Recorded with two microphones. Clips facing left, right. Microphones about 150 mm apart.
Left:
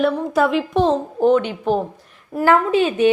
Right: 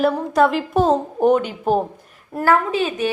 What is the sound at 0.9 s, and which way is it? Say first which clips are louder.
Speech: even; 15° right (ahead or behind).